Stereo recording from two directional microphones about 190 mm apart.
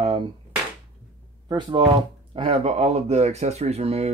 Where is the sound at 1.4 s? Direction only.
25° right (ahead or behind).